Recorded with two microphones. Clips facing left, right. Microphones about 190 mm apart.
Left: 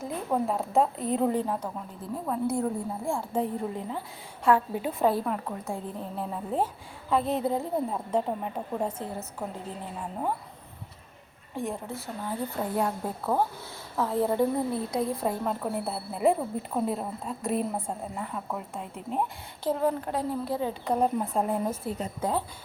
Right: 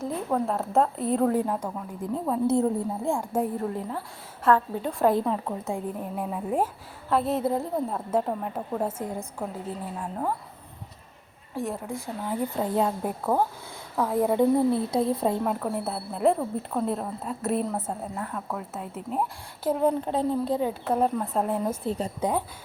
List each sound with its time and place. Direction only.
0.0 s a woman's voice: 5° left (ahead or behind)
2.3 s a woman's voice: 20° right (ahead or behind); by 4.0 s centre (ahead or behind)
4.4 s a woman's voice: 10° left (ahead or behind)
5.1 s a woman's voice: 20° right (ahead or behind)
10.0 s a woman's voice: 5° left (ahead or behind)
11.5 s a woman's voice: centre (ahead or behind)
11.9 s a woman's voice: 15° right (ahead or behind)
14.8 s a woman's voice: 25° right (ahead or behind)
15.6 s a woman's voice: centre (ahead or behind)
19.6 s a woman's voice: 15° right (ahead or behind)
20.8 s a woman's voice: 5° right (ahead or behind)
21.8 s a woman's voice: 30° right (ahead or behind)
22.2 s a woman's voice: 15° right (ahead or behind)